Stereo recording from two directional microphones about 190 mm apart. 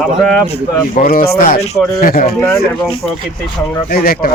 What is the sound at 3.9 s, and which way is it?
Speech, 50° left (ahead or behind).